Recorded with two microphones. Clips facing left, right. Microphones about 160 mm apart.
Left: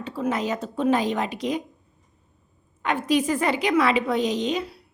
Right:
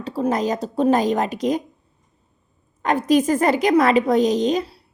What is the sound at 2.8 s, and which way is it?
A woman's voice, 40° right (ahead or behind).